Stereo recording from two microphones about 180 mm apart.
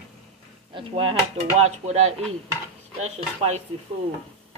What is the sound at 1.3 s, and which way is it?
Speech, 40° right (ahead or behind).